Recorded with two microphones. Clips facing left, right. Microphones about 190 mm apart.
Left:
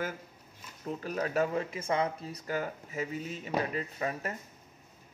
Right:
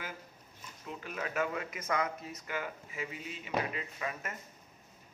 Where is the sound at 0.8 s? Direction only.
40° left (ahead or behind).